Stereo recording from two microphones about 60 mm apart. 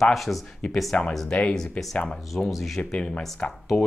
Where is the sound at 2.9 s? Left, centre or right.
Centre.